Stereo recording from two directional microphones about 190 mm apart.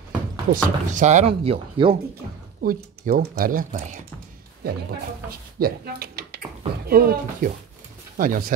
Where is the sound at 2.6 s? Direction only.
50° right (ahead or behind).